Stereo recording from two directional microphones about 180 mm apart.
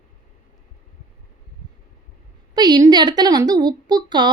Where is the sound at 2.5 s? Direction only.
25° right (ahead or behind).